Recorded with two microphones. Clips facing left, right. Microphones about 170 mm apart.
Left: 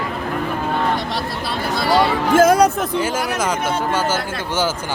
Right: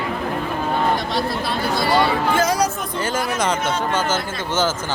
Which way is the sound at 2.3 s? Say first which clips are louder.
Left 11 dB; 55° left (ahead or behind).